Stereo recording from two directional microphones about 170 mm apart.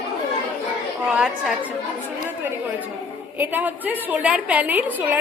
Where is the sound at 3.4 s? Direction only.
10° right (ahead or behind).